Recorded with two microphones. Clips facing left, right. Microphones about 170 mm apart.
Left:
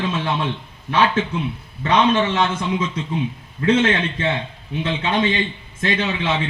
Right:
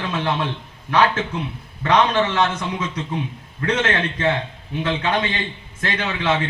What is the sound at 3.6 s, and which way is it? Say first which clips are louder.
A man's voice: left 4 dB; 20° left (ahead or behind).